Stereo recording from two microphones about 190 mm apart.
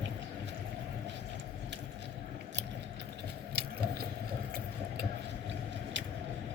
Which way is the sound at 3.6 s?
55° right (ahead or behind).